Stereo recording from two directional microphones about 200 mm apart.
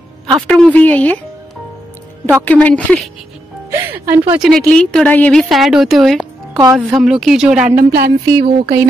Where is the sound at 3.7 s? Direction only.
10° right (ahead or behind).